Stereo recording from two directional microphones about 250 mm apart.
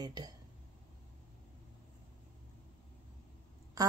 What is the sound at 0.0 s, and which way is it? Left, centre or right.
Speech, centre.